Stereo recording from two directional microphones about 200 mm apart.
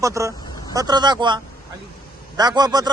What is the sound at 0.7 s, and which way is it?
Speech, 20° right (ahead or behind).